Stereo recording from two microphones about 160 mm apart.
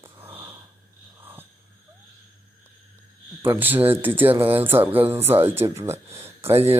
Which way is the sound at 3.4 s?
15° right (ahead or behind).